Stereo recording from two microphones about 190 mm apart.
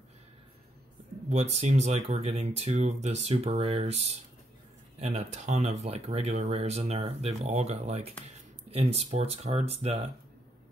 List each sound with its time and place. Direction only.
1.3 s speech: 35° right (ahead or behind)